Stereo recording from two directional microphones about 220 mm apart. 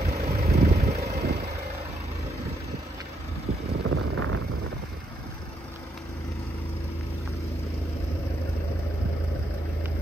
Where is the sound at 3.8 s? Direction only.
65° right (ahead or behind).